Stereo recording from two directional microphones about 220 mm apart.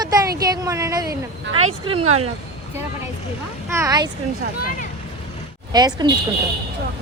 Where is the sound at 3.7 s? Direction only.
15° right (ahead or behind).